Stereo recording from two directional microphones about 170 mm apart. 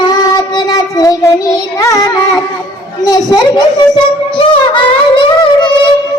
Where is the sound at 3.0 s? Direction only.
20° left (ahead or behind).